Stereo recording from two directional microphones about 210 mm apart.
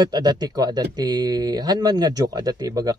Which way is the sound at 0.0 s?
20° right (ahead or behind).